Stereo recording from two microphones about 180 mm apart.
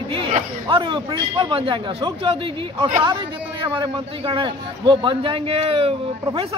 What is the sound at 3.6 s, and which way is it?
A man's voice, 25° right (ahead or behind).